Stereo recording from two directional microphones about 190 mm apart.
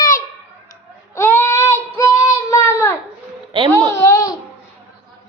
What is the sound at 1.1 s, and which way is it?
Child singing, 15° left (ahead or behind).